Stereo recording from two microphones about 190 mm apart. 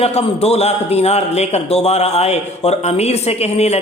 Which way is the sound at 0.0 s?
35° left (ahead or behind).